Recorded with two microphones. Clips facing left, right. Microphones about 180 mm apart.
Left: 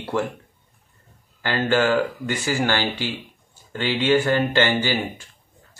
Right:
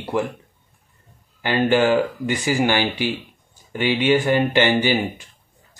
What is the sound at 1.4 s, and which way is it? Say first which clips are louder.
Speech: right 3 dB; 15° right (ahead or behind).